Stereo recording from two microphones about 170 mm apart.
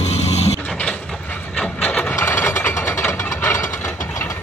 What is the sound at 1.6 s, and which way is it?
Engine, 5° left (ahead or behind).